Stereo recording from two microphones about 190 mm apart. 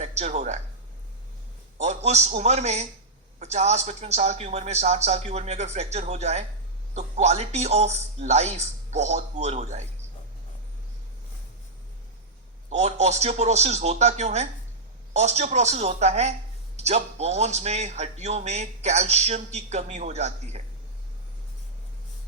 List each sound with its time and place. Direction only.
0.0 s speech: 35° right (ahead or behind)
1.8 s a man's voice: 35° right (ahead or behind)
12.7 s a man's voice: 35° right (ahead or behind)